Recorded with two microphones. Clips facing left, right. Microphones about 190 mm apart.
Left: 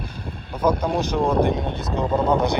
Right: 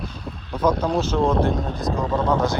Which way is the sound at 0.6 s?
10° left (ahead or behind).